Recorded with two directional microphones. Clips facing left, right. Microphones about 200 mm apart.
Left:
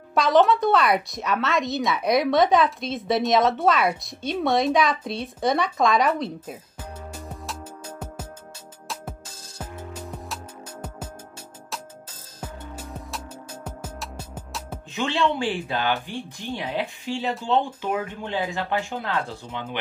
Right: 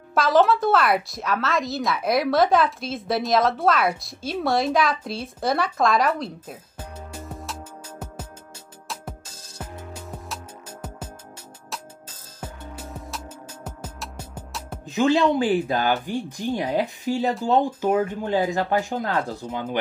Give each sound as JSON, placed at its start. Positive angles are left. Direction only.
{"t": 0.1, "sound": "speech", "side_deg": 0}
{"t": 10.2, "sound": "music", "side_deg": 0}
{"t": 13.8, "sound": "music", "side_deg": 10}
{"t": 14.9, "sound": "speech", "side_deg": -40}